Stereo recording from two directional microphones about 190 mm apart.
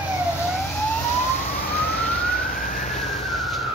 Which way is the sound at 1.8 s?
60° left (ahead or behind).